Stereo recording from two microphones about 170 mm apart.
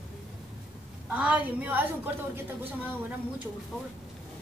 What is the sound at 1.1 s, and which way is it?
A woman's voice, 10° right (ahead or behind).